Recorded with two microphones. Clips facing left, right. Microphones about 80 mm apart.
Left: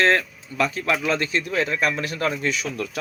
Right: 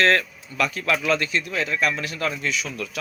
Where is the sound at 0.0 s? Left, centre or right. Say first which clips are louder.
Even; left.